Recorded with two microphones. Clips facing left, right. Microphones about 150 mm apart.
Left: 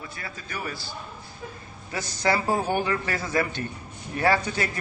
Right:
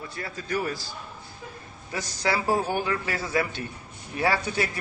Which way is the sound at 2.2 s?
10° right (ahead or behind).